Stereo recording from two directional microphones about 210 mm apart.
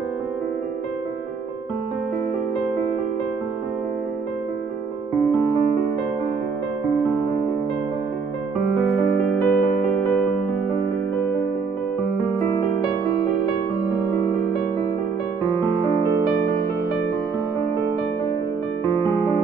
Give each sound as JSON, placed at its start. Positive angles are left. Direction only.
{"t": 9.4, "sound": "music", "side_deg": 5}
{"t": 12.4, "sound": "music", "side_deg": 15}